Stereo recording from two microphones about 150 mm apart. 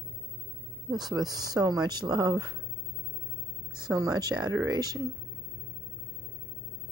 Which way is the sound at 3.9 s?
25° right (ahead or behind).